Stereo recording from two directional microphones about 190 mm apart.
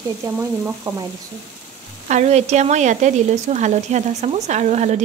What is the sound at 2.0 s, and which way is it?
Speech, 35° right (ahead or behind).